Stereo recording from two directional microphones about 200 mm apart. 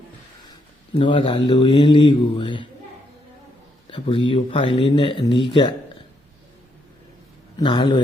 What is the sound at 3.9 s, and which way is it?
Speech, 25° left (ahead or behind).